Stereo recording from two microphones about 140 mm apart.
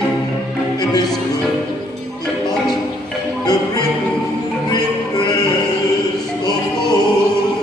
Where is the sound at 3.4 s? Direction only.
25° left (ahead or behind).